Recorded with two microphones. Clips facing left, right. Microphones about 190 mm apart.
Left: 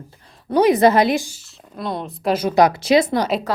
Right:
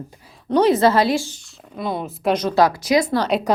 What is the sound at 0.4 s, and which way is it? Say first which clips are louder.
Speech: left 1 dB; 10° left (ahead or behind).